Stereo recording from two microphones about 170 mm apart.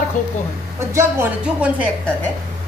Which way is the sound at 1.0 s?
10° right (ahead or behind).